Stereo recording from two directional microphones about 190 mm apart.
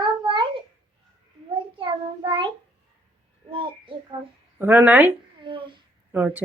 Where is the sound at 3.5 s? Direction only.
25° right (ahead or behind).